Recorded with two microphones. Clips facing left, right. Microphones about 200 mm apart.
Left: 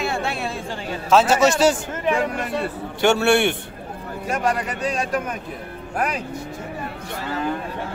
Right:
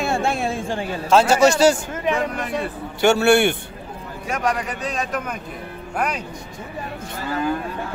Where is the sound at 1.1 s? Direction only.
Centre (ahead or behind).